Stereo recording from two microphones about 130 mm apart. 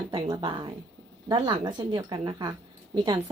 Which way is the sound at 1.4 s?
35° right (ahead or behind).